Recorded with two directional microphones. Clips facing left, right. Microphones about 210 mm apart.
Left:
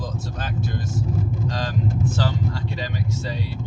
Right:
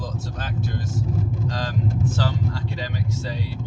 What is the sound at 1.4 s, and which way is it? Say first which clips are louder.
Speech: left 1 dB; 20° left (ahead or behind).